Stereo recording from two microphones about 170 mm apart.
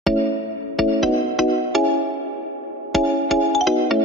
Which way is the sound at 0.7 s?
Centre (ahead or behind).